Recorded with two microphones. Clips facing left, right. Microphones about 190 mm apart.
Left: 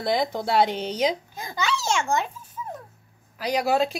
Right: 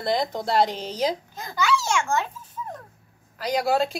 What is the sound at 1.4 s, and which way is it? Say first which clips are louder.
A child's voice: right 4 dB; 20° left (ahead or behind).